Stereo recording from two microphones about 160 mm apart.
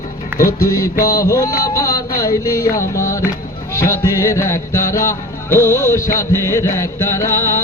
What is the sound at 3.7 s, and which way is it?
Music, 20° left (ahead or behind).